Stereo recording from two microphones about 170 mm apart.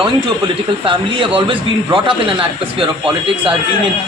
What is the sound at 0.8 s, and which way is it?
A man's voice, 30° right (ahead or behind).